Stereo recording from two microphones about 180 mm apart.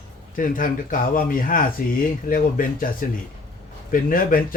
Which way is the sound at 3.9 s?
50° left (ahead or behind).